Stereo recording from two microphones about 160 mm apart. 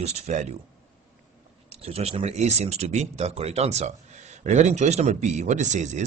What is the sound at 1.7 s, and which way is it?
Speech, 40° right (ahead or behind).